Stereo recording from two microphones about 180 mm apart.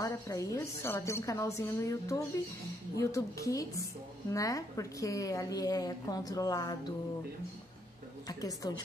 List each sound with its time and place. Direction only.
0.0 s a woman's voice: 15° left (ahead or behind)
8.3 s a woman's voice: 20° left (ahead or behind)